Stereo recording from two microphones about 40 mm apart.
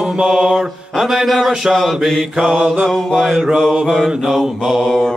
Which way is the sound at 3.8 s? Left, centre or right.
Centre.